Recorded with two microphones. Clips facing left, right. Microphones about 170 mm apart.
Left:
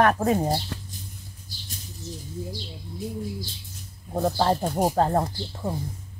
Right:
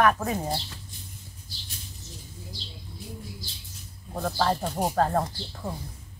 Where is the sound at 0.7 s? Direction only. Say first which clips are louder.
Left 10 dB; 65° left (ahead or behind).